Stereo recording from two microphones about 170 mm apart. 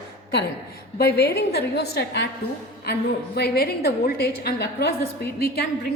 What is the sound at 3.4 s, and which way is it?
A woman's voice, 70° left (ahead or behind).